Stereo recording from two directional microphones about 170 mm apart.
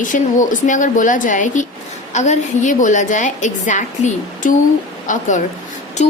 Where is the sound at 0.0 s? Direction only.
50° left (ahead or behind).